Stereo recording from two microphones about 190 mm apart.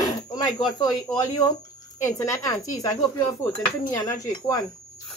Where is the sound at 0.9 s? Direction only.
20° left (ahead or behind).